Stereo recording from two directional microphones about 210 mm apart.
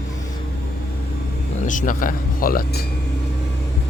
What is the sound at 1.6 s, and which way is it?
Speech, 40° left (ahead or behind).